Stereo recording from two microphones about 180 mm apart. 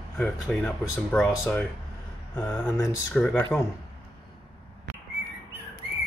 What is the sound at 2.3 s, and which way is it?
Speech, 15° left (ahead or behind).